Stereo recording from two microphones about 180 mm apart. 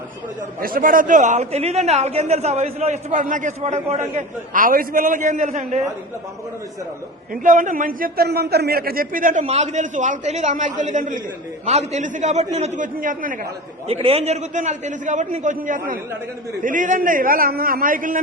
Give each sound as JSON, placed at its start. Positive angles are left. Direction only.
{"t": 0.6, "sound": "a man's voice", "side_deg": -50}
{"t": 7.4, "sound": "a man's voice", "side_deg": -45}
{"t": 13.8, "sound": "a man's voice", "side_deg": -35}